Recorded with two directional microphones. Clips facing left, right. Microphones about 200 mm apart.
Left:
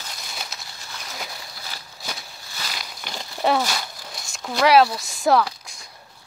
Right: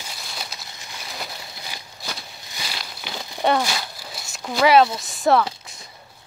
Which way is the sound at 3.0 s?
5° right (ahead or behind).